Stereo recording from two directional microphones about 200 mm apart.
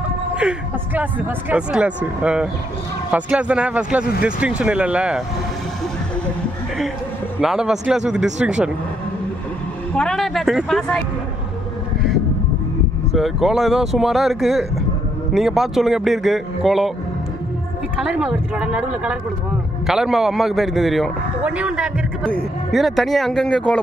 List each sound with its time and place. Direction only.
0.3 s a man's voice: 5° right (ahead or behind)
7.3 s a man's voice: 5° right (ahead or behind)
9.9 s a man's voice: centre (ahead or behind)
13.1 s a man's voice: centre (ahead or behind)
17.9 s a man's voice: 5° right (ahead or behind)